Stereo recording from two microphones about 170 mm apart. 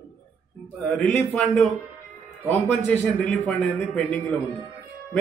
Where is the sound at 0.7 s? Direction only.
5° left (ahead or behind).